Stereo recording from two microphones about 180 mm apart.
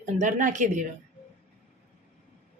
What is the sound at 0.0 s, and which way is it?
Speech, 45° right (ahead or behind).